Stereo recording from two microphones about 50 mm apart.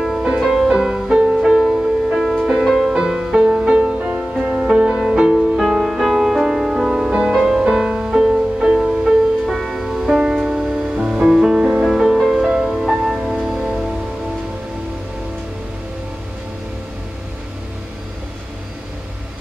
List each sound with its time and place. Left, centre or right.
0.4 s music: centre
9.5 s music: centre
10.1 s music: right
10.6 s music: centre
11.8 s music: centre